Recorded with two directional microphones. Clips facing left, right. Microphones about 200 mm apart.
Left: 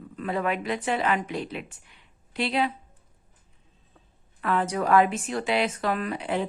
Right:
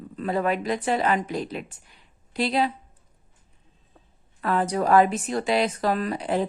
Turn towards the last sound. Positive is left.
turn(degrees=-40)  # may be behind; listen again after turning